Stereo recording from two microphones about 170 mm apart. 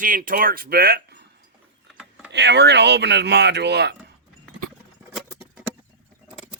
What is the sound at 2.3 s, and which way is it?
Speech, 90° right.